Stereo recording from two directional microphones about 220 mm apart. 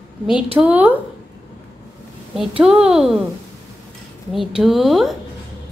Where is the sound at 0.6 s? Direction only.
5° right (ahead or behind).